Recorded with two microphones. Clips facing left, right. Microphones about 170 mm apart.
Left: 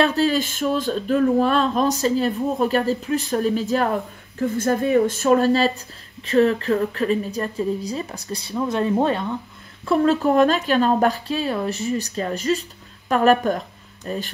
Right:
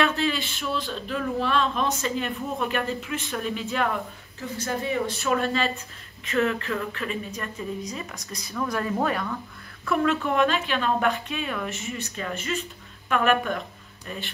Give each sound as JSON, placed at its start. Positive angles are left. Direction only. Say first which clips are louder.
{"t": 0.0, "sound": "speech", "louder": "left 6 dB", "side_deg": 40}
{"t": 4.4, "sound": "speech", "louder": "left 9 dB", "side_deg": 50}